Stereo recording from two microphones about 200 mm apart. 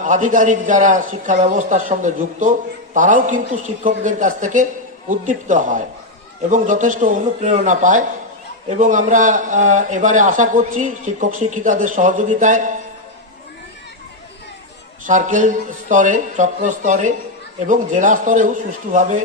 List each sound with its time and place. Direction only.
0.0 s a man's voice: 40° right (ahead or behind)
15.0 s a man's voice: 40° right (ahead or behind)